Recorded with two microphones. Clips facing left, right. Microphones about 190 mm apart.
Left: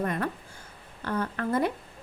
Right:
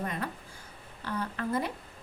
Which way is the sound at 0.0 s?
55° left (ahead or behind).